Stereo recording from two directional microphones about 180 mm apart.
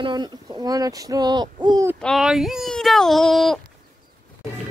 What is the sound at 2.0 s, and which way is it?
Speech, centre (ahead or behind).